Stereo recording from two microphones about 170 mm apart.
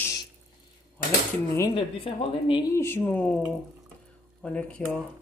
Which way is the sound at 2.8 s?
15° left (ahead or behind).